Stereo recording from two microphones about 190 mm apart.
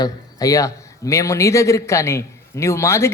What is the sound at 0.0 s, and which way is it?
A man's voice, 20° left (ahead or behind).